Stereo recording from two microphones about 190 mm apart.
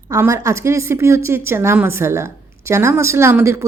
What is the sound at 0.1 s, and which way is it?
A woman's voice, 15° right (ahead or behind).